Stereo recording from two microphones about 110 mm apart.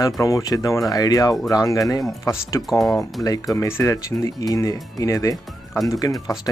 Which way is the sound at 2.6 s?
Centre (ahead or behind).